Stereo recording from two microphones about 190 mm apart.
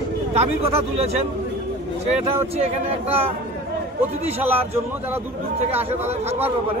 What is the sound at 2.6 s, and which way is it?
Speech, 30° right (ahead or behind).